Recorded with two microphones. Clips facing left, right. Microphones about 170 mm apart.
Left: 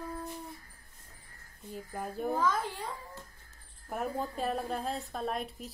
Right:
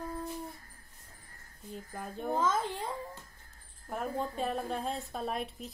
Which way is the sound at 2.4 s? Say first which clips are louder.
Right 3 dB; 20° right (ahead or behind).